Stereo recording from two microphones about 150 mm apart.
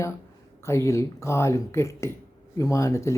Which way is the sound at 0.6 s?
20° left (ahead or behind).